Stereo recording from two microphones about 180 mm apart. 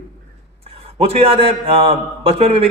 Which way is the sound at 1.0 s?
35° right (ahead or behind).